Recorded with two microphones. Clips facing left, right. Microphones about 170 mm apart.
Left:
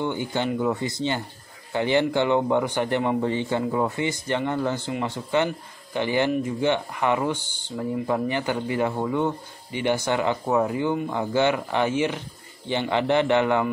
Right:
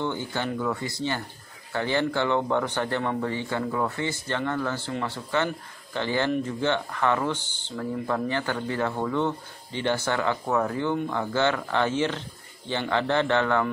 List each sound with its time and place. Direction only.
0.0 s speech: 15° left (ahead or behind)